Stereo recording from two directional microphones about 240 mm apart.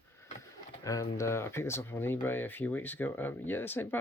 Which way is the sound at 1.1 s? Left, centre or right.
Centre.